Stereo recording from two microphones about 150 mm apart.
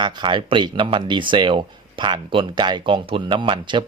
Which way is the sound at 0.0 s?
30° right (ahead or behind).